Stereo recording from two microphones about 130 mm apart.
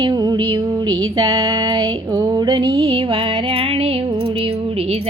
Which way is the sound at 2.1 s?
30° right (ahead or behind).